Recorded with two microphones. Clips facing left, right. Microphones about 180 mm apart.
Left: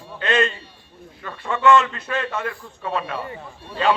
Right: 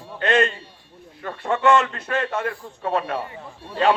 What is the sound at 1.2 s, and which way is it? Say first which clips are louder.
A man's voice: right 2 dB; 50° right (ahead or behind).